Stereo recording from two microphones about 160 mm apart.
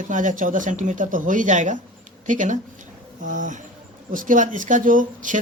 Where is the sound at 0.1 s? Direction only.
55° right (ahead or behind).